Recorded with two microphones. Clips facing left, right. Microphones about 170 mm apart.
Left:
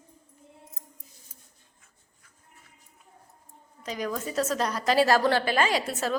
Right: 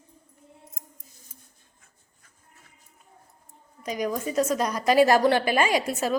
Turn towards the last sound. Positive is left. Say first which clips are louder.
# right 3 dB
turn(degrees=-10)  # may be behind; listen again after turning